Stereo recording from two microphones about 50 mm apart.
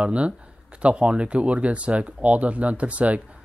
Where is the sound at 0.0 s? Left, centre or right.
Right.